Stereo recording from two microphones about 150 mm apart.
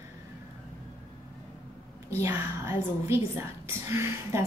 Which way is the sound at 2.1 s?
15° right (ahead or behind).